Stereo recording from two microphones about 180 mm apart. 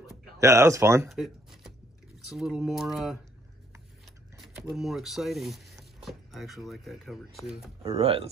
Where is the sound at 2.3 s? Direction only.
5° right (ahead or behind).